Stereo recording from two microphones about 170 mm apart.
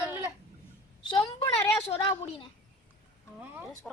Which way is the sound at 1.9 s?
30° left (ahead or behind).